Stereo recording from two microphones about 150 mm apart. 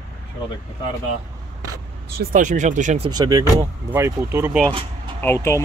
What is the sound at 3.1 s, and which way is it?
Speech, 25° right (ahead or behind).